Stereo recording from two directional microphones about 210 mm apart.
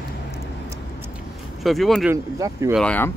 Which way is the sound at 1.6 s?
Centre (ahead or behind).